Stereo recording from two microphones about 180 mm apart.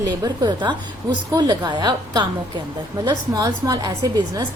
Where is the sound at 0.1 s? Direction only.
25° right (ahead or behind).